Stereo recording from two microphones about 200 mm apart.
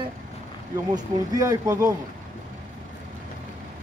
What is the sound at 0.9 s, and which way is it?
Speech, 15° right (ahead or behind).